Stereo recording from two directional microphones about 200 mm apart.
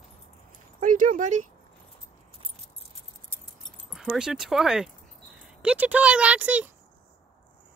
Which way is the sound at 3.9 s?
Centre (ahead or behind).